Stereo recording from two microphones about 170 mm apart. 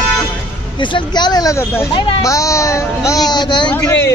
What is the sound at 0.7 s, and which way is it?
Speech, 25° left (ahead or behind).